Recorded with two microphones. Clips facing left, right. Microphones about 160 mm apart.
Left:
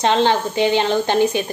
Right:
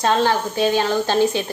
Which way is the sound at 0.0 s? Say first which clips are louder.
Left 2 dB; 20° left (ahead or behind).